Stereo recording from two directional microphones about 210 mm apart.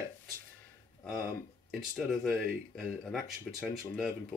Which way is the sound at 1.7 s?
Centre (ahead or behind).